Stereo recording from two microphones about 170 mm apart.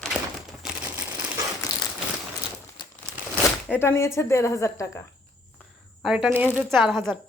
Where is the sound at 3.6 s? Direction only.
10° left (ahead or behind).